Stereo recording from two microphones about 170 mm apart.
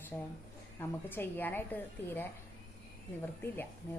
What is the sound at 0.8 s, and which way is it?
A woman's voice, 10° left (ahead or behind).